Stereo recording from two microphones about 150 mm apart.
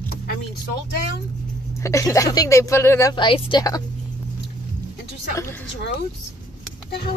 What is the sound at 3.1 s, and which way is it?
Speech, 30° left (ahead or behind).